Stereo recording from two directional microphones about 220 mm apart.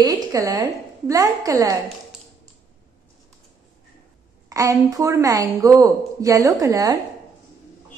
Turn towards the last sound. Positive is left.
turn(degrees=-15)  # may be behind; listen again after turning